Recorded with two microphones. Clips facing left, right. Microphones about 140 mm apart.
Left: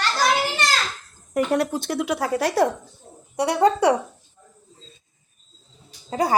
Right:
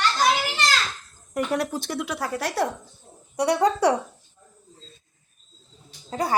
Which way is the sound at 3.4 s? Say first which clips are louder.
Left 2 dB; centre (ahead or behind).